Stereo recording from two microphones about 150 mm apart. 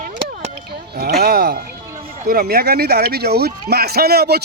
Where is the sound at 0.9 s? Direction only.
90° right.